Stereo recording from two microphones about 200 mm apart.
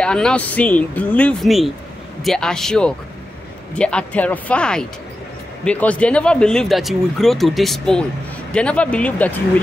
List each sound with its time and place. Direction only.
0.0 s speech: 5° left (ahead or behind)